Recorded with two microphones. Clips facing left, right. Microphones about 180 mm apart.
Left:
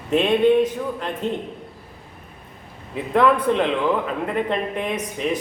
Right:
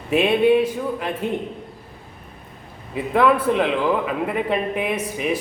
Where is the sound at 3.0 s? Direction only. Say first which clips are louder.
Even; 5° right (ahead or behind).